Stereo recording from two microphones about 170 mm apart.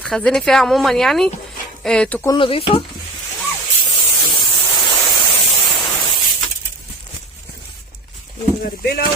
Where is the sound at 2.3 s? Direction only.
30° left (ahead or behind).